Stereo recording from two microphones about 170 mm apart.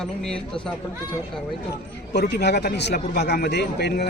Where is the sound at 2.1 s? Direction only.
75° left (ahead or behind).